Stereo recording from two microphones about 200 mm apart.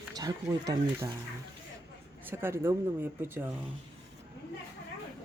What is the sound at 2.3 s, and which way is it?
Speech, 10° right (ahead or behind).